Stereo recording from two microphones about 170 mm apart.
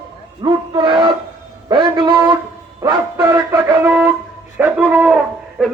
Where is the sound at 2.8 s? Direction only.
20° right (ahead or behind).